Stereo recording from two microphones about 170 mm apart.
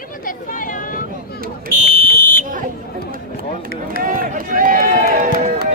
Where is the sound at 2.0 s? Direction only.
60° left (ahead or behind).